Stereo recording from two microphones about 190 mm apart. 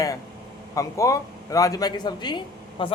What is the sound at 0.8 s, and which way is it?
A man's voice, 15° left (ahead or behind).